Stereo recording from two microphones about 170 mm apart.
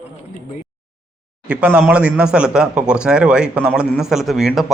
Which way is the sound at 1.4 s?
10° right (ahead or behind).